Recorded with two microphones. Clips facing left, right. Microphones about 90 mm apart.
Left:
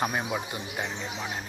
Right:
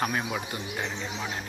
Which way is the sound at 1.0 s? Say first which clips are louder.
Right 1 dB; 5° left (ahead or behind).